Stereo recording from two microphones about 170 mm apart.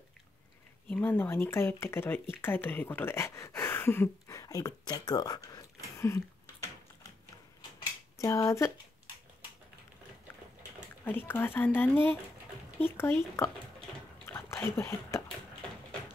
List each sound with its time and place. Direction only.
0.8 s speech: 10° left (ahead or behind)
8.2 s speech: 15° left (ahead or behind)
11.1 s speech: 10° left (ahead or behind)
14.2 s a sound: 15° left (ahead or behind)